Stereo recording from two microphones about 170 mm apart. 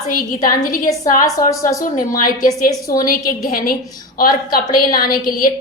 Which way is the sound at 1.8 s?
55° left (ahead or behind).